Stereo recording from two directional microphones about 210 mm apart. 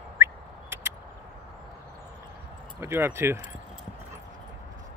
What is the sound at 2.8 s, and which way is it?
Speech, 10° right (ahead or behind).